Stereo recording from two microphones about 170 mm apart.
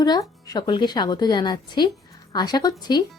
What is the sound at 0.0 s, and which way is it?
Speech, 20° left (ahead or behind).